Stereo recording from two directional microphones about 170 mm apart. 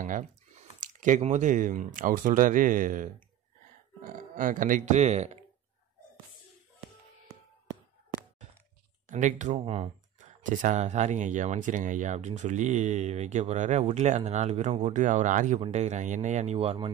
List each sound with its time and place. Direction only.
0.0 s speech: 45° right (ahead or behind)
9.1 s speech: 45° right (ahead or behind)